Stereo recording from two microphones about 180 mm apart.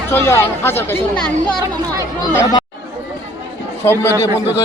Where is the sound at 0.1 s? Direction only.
15° left (ahead or behind).